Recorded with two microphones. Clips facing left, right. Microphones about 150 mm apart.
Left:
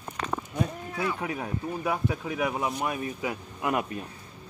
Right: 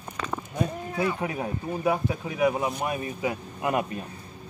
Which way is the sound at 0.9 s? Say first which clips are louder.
Right 3 dB; 15° right (ahead or behind).